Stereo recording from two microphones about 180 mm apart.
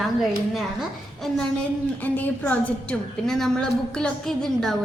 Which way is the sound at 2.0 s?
10° left (ahead or behind).